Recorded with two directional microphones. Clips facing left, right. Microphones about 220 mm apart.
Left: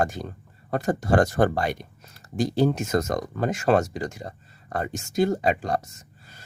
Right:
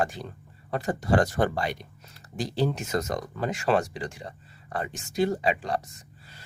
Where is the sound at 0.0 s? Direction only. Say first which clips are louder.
Left 3 dB; 45° left (ahead or behind).